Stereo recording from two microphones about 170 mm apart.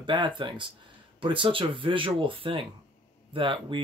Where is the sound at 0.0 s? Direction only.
30° right (ahead or behind).